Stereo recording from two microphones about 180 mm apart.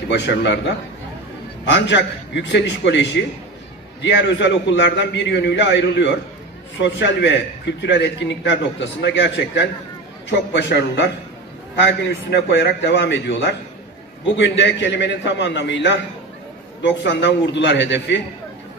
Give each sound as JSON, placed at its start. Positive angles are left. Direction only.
{"t": 0.1, "sound": "a man's voice", "side_deg": 75}
{"t": 12.4, "sound": "a man's voice", "side_deg": 70}